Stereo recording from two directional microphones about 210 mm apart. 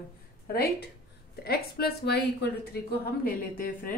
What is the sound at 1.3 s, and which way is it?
Speech, 50° left (ahead or behind).